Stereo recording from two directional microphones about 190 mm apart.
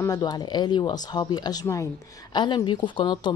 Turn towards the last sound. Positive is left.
turn(degrees=25)  # may be behind; listen again after turning